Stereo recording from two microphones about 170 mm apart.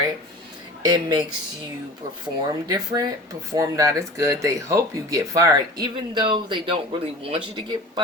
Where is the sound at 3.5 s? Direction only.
20° right (ahead or behind).